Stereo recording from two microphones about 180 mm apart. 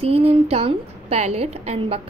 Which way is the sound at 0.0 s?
35° right (ahead or behind).